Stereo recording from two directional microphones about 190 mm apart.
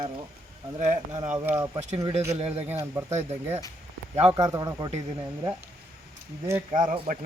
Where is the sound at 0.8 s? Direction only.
35° right (ahead or behind).